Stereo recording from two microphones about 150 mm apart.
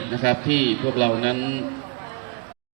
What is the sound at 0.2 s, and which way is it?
A man's voice, 45° left (ahead or behind).